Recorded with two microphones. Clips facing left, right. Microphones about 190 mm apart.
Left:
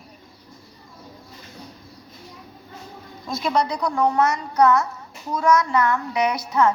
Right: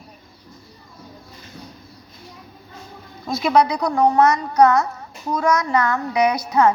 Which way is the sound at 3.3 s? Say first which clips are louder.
Right 5 dB; 65° right (ahead or behind).